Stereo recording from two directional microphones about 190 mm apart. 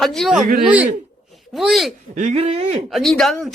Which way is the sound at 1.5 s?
Centre (ahead or behind).